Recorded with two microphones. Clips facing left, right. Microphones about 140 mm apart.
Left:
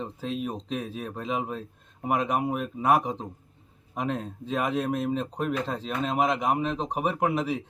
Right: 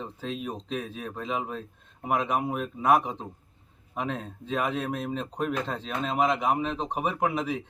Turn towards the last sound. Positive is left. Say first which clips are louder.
# left 1 dB
turn(degrees=5)  # may be behind; listen again after turning